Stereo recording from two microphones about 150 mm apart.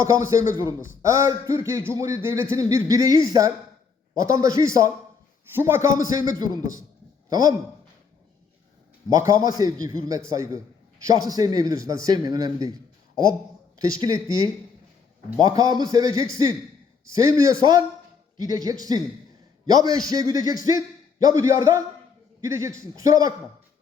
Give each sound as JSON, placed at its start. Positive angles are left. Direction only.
{"t": 0.0, "sound": "a man's voice", "side_deg": -20}
{"t": 9.0, "sound": "a man's voice", "side_deg": -20}
{"t": 13.7, "sound": "a man's voice", "side_deg": -25}